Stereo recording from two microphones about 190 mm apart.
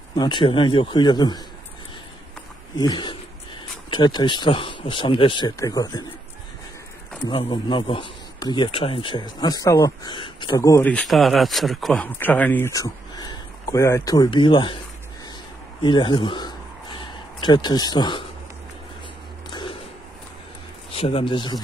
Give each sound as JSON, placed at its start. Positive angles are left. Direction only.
{"t": 0.1, "sound": "a man's voice", "side_deg": 25}
{"t": 2.8, "sound": "a man's voice", "side_deg": 25}
{"t": 7.2, "sound": "a man's voice", "side_deg": 25}
{"t": 10.9, "sound": "speech", "side_deg": 5}
{"t": 15.8, "sound": "a sound", "side_deg": 25}
{"t": 20.9, "sound": "a man's voice", "side_deg": 30}